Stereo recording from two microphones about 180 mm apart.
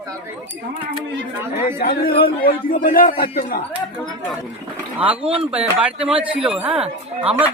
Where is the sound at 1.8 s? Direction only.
55° left (ahead or behind).